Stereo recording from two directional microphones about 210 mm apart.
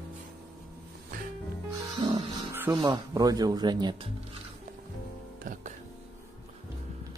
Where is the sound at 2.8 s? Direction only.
20° right (ahead or behind).